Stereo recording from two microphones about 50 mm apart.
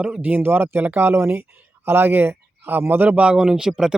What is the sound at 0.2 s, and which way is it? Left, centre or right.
Speech, right.